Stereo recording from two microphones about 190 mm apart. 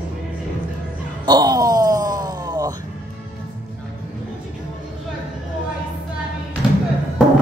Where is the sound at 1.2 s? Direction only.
20° right (ahead or behind).